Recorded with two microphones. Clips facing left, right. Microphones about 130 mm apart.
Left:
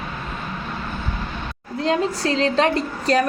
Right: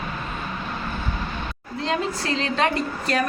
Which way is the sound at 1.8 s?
35° left (ahead or behind).